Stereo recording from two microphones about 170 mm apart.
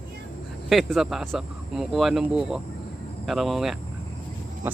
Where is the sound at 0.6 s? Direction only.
Centre (ahead or behind).